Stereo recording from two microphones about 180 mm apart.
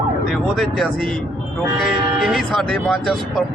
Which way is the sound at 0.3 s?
Centre (ahead or behind).